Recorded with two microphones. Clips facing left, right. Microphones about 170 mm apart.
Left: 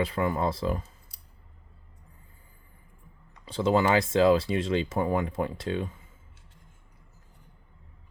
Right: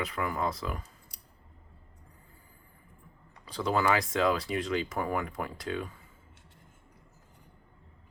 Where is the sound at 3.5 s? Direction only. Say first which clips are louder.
Left 4 dB; 25° left (ahead or behind).